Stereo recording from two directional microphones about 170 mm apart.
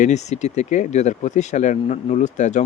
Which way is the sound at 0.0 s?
40° left (ahead or behind).